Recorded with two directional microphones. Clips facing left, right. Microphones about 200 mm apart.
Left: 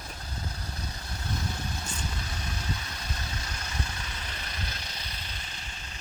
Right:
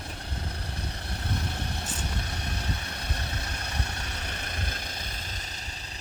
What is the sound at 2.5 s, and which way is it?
Vehicle, 60° right (ahead or behind).